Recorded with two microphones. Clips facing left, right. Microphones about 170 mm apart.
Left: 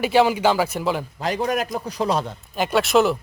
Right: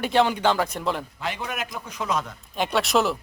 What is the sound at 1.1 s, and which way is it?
A man's voice, 40° left (ahead or behind).